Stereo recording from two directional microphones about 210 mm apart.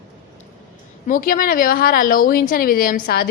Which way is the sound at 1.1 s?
40° left (ahead or behind).